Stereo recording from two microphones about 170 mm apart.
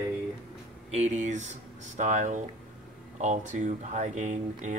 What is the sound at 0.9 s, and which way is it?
Speech, 45° right (ahead or behind).